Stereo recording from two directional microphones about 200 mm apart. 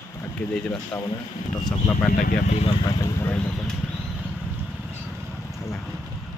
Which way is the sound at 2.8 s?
15° left (ahead or behind).